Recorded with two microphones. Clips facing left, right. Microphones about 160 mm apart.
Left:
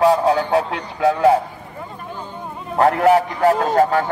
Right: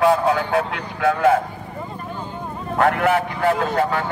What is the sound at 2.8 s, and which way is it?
A man's voice, 35° left (ahead or behind).